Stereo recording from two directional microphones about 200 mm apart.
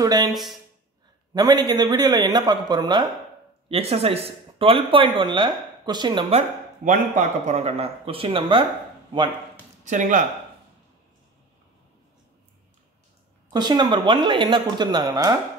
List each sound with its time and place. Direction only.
0.0 s speech: 20° right (ahead or behind)
0.3 s speech: centre (ahead or behind)
1.3 s speech: 20° right (ahead or behind)
6.8 s speech: 40° right (ahead or behind)
9.8 s speech: 40° right (ahead or behind)
13.5 s speech: 20° right (ahead or behind)